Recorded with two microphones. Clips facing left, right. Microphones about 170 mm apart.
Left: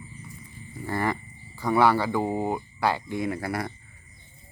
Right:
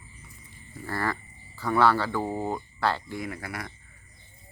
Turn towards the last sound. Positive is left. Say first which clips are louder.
# left 7 dB
turn(degrees=35)  # may be behind; listen again after turning